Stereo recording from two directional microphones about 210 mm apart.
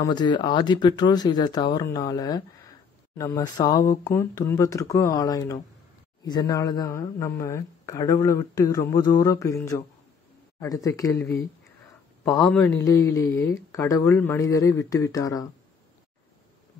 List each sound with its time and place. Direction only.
0.0 s speech: 20° left (ahead or behind)
10.6 s speech: 15° left (ahead or behind)
12.4 s speech: 10° left (ahead or behind)